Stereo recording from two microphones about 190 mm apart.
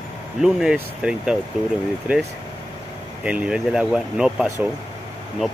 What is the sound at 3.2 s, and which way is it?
Speech, 5° right (ahead or behind).